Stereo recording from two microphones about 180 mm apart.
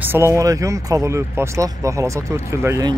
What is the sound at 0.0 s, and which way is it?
Speech, 15° right (ahead or behind).